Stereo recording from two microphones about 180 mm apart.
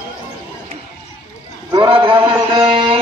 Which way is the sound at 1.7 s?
25° right (ahead or behind).